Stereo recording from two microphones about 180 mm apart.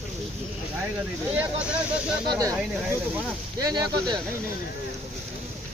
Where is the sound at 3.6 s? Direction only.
20° right (ahead or behind).